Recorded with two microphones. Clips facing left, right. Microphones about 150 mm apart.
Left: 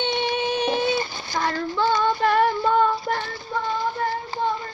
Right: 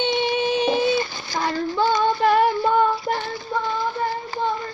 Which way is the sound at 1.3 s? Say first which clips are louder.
Right 1 dB; 10° right (ahead or behind).